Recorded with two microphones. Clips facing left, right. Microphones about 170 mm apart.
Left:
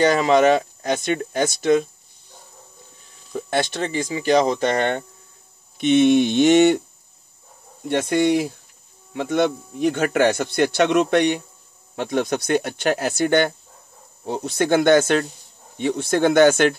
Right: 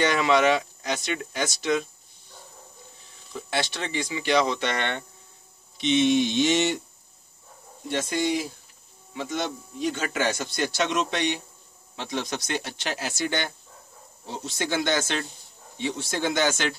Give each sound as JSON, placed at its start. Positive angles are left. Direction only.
{"t": 0.0, "sound": "speech", "side_deg": 40}
{"t": 3.3, "sound": "speech", "side_deg": 50}
{"t": 5.8, "sound": "speech", "side_deg": 55}
{"t": 7.9, "sound": "speech", "side_deg": 60}